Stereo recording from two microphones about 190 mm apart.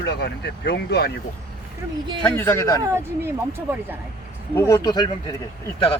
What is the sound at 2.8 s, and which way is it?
Speech, 15° right (ahead or behind).